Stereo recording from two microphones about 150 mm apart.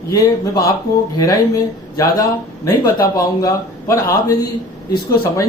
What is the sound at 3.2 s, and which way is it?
Speech, 20° left (ahead or behind).